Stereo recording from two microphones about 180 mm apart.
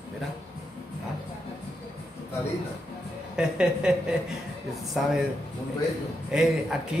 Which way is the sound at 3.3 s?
5° right (ahead or behind).